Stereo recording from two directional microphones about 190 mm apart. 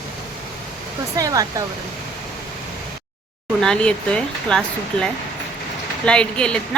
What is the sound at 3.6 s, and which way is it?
Speech, 5° left (ahead or behind).